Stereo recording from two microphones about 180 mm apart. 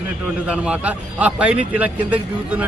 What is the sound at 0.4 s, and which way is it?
A man's voice, 5° right (ahead or behind).